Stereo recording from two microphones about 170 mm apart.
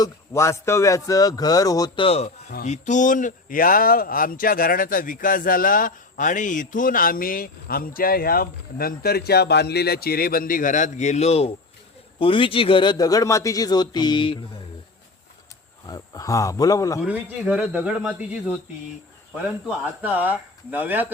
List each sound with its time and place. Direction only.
0.0 s a man's voice: 15° left (ahead or behind)
2.0 s a man's voice: 35° left (ahead or behind)
15.9 s a man's voice: 20° left (ahead or behind)
17.0 s a man's voice: 10° right (ahead or behind)
19.6 s a man's voice: 10° right (ahead or behind)